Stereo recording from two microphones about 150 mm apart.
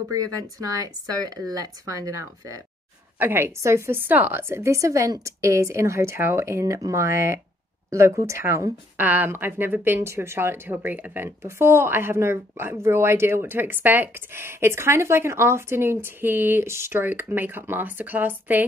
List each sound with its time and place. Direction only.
0.3 s a woman's voice: 25° right (ahead or behind)